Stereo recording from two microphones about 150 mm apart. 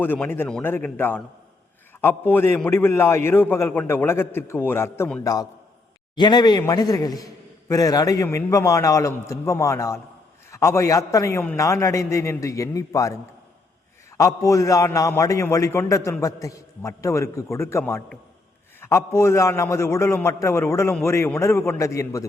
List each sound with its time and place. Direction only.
0.0 s a man's voice: 15° left (ahead or behind)
5.2 s a man's voice: 25° left (ahead or behind)
14.2 s a man's voice: 20° left (ahead or behind)